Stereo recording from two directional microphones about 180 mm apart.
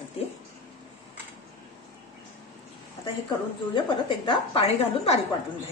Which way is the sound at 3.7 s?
30° left (ahead or behind).